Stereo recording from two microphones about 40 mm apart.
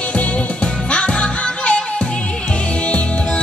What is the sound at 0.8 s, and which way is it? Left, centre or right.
Music, left.